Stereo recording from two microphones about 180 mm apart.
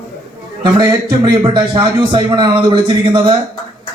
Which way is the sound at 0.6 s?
25° right (ahead or behind).